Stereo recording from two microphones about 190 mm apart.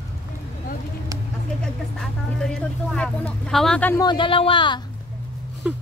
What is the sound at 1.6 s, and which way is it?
Speech, 5° left (ahead or behind).